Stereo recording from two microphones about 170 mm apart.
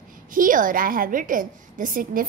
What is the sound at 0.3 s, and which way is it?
A woman's voice, 55° right (ahead or behind).